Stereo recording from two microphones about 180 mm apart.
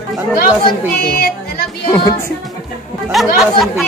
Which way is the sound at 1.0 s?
55° left (ahead or behind).